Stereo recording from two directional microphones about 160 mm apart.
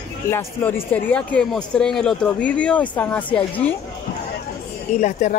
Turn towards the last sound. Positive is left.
turn(degrees=50)  # may be behind; listen again after turning